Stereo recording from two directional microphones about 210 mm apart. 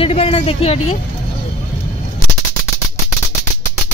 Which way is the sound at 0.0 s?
30° left (ahead or behind).